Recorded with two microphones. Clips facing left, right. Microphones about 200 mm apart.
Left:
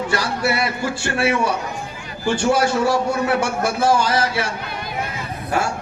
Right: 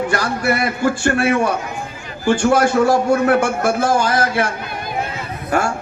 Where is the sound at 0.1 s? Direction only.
50° right (ahead or behind).